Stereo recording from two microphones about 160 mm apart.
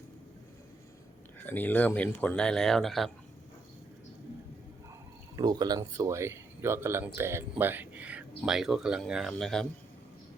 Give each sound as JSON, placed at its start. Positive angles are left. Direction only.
{"t": 1.5, "sound": "speech", "side_deg": 10}
{"t": 5.4, "sound": "speech", "side_deg": -25}